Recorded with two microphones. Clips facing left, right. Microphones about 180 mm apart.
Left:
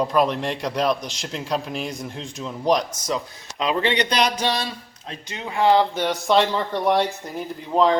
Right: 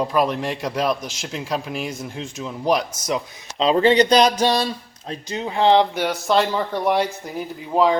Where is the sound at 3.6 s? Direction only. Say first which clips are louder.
Right 7 dB; 35° right (ahead or behind).